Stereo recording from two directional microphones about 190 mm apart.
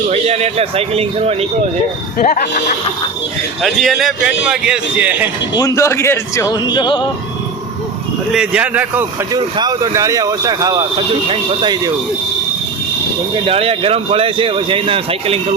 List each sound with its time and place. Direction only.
0.1 s speech: 35° right (ahead or behind)
2.1 s speech: 45° left (ahead or behind)
3.6 s a man's voice: centre (ahead or behind)
5.5 s speech: 15° left (ahead or behind)
8.3 s a man's voice: 5° right (ahead or behind)
9.3 s speech: 20° right (ahead or behind)
13.3 s speech: 30° right (ahead or behind)